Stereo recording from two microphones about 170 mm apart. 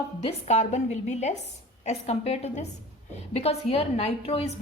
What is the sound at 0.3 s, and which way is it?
A woman's voice, 40° left (ahead or behind).